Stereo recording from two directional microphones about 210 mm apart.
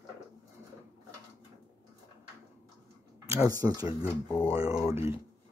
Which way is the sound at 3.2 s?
15° right (ahead or behind).